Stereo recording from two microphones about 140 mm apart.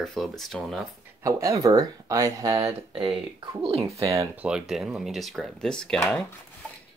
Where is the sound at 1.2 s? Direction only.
20° right (ahead or behind).